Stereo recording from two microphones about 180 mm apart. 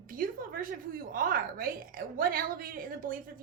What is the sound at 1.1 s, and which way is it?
A woman's voice, 50° right (ahead or behind).